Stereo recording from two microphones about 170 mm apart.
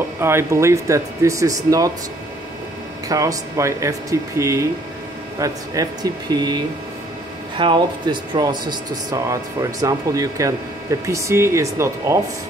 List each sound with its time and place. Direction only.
0.2 s speech: 15° right (ahead or behind)
3.1 s speech: 20° right (ahead or behind)